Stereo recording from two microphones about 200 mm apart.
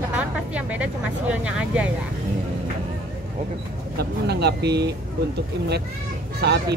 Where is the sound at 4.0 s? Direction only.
55° right (ahead or behind).